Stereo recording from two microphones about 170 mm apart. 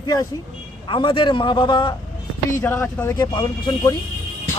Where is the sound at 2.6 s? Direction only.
15° left (ahead or behind).